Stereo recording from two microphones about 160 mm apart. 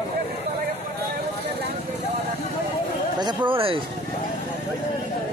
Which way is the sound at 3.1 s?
30° right (ahead or behind).